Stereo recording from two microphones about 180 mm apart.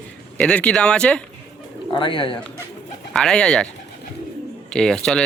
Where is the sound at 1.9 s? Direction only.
25° left (ahead or behind).